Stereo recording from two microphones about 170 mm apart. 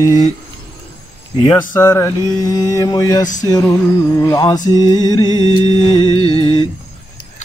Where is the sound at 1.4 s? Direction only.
20° left (ahead or behind).